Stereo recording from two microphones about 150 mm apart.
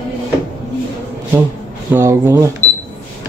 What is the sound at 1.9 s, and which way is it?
Speech, 15° right (ahead or behind).